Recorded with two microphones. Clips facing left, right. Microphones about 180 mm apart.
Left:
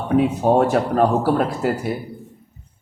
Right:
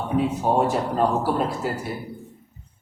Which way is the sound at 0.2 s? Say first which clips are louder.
Left 5 dB; 65° left (ahead or behind).